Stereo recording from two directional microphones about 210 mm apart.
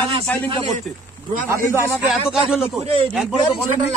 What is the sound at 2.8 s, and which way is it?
Speech, 30° right (ahead or behind).